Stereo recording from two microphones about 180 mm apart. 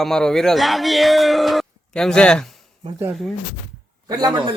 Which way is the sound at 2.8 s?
25° right (ahead or behind).